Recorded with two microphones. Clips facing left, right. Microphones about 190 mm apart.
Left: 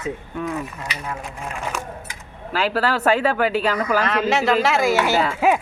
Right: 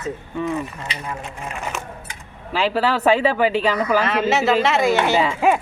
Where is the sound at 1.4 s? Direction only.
5° right (ahead or behind).